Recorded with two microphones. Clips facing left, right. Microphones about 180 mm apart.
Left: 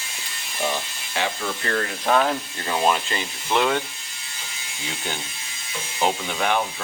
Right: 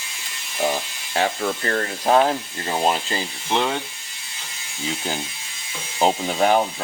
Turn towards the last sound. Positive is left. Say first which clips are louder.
# right 5 dB
turn(degrees=-35)  # may be behind; listen again after turning